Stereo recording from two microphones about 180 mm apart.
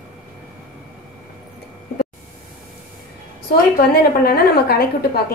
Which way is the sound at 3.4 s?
55° left (ahead or behind).